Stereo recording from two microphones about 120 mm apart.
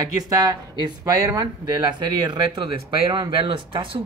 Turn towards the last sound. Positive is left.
turn(degrees=-45)  # may be behind; listen again after turning